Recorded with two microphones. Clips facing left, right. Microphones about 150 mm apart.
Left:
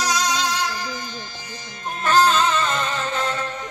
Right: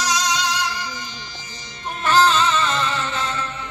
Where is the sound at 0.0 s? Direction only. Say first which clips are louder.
Even; 55° left (ahead or behind).